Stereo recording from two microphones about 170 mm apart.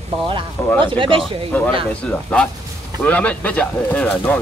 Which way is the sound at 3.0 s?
10° left (ahead or behind).